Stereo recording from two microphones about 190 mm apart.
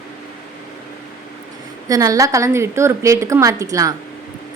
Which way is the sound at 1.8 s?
20° right (ahead or behind).